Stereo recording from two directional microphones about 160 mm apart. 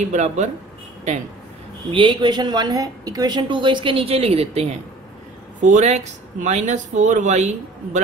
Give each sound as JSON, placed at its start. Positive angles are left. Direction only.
{"t": 0.0, "sound": "speech", "side_deg": -45}
{"t": 1.9, "sound": "speech", "side_deg": -30}
{"t": 5.6, "sound": "speech", "side_deg": -50}